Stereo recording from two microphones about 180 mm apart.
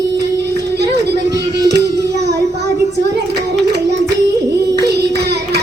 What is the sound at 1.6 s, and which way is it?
Child singing, 65° right (ahead or behind).